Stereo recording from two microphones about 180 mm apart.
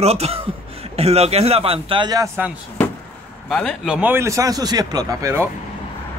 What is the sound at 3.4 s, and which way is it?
Speech, 5° left (ahead or behind).